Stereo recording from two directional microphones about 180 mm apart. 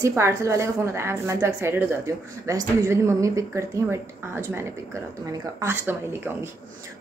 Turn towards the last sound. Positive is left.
turn(degrees=-10)  # may be behind; listen again after turning